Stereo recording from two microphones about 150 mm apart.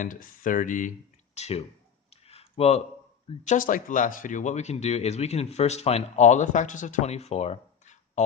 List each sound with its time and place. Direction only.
0.0 s speech: 60° left (ahead or behind)
1.4 s speech: 45° left (ahead or behind)
2.2 s a sound: 40° left (ahead or behind)
3.4 s speech: 60° left (ahead or behind)